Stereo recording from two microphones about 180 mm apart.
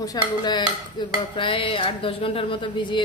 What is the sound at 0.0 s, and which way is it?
Speech, 20° left (ahead or behind).